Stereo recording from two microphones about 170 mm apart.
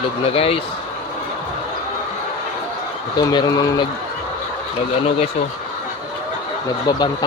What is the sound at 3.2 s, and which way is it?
Speech, 25° left (ahead or behind).